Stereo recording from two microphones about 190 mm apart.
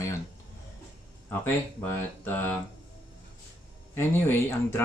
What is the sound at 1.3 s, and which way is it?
Speech, 10° left (ahead or behind).